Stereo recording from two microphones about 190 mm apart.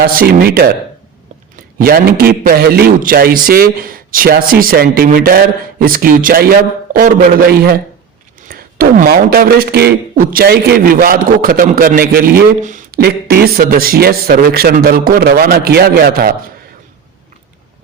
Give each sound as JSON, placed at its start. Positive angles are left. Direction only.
{"t": 0.0, "sound": "a man's voice", "side_deg": -50}
{"t": 1.8, "sound": "a man's voice", "side_deg": -50}